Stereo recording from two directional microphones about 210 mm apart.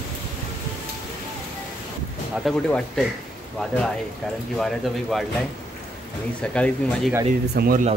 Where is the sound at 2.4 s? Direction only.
5° left (ahead or behind).